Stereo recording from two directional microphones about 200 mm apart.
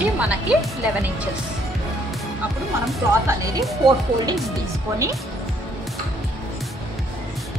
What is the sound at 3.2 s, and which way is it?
Speech, 15° right (ahead or behind).